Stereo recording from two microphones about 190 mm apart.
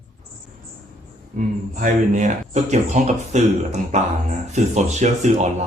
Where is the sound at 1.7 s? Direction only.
40° right (ahead or behind).